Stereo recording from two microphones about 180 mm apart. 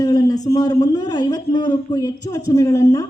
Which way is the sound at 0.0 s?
20° left (ahead or behind).